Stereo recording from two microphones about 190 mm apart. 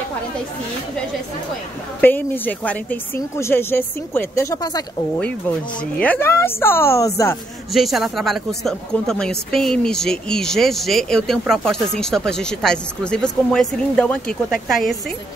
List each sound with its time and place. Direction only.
2.0 s a woman's voice: 10° left (ahead or behind)
5.8 s a woman's voice: 5° left (ahead or behind)
7.7 s speech: centre (ahead or behind)